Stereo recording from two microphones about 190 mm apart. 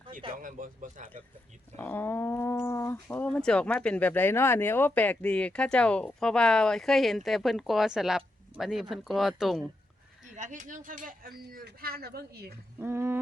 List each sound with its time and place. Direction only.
0.3 s speech: 45° right (ahead or behind)
1.7 s speech: 10° left (ahead or behind)
10.3 s speech: 40° right (ahead or behind)
12.8 s a sound: 15° right (ahead or behind)